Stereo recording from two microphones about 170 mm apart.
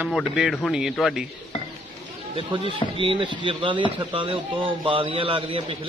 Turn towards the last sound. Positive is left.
turn(degrees=-30)  # may be behind; listen again after turning